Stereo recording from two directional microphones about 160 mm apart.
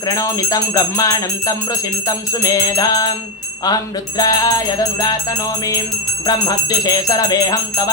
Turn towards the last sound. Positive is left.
turn(degrees=25)  # may be behind; listen again after turning